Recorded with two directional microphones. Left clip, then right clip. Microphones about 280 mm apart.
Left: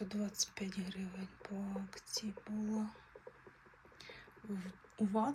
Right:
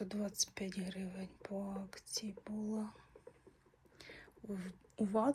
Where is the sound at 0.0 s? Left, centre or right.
Centre.